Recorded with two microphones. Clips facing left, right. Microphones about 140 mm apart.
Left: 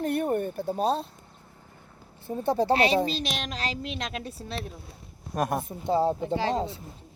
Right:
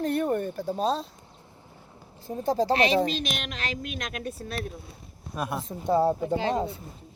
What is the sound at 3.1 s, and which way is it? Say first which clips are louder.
Speech: even; 30° left (ahead or behind).